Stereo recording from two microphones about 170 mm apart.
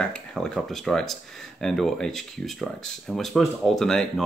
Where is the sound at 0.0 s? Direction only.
5° left (ahead or behind).